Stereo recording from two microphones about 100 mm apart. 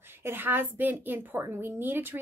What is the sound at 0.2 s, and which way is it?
A woman's voice, 20° right (ahead or behind).